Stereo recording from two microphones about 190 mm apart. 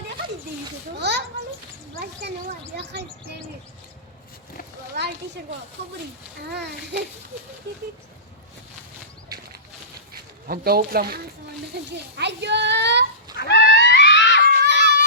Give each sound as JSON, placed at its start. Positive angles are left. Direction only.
{"t": 0.9, "sound": "a child's voice", "side_deg": -65}
{"t": 4.9, "sound": "speech", "side_deg": -65}
{"t": 6.5, "sound": "speech", "side_deg": -60}
{"t": 10.1, "sound": "speech", "side_deg": -50}
{"t": 11.7, "sound": "speech", "side_deg": -65}
{"t": 13.5, "sound": "screaming", "side_deg": 65}
{"t": 14.6, "sound": "screaming", "side_deg": -65}